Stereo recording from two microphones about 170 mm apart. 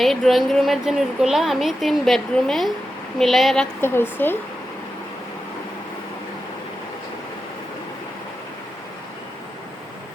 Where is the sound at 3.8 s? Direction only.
15° left (ahead or behind).